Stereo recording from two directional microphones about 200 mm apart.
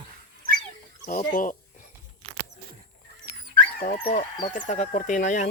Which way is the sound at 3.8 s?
40° left (ahead or behind).